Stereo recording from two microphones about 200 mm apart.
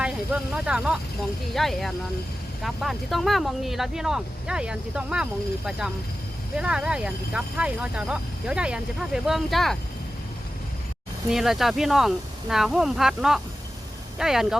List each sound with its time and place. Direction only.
0.5 s speech: 5° right (ahead or behind)
11.3 s speech: centre (ahead or behind)